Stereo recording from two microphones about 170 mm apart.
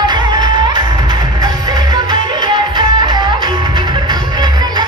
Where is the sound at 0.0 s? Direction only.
25° right (ahead or behind).